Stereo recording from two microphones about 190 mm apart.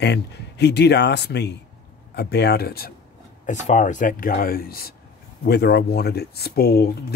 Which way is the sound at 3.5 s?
40° left (ahead or behind).